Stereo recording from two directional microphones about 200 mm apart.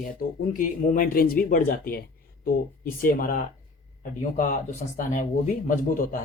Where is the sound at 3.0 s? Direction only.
45° left (ahead or behind).